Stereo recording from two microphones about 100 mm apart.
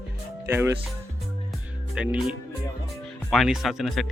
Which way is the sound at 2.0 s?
10° right (ahead or behind).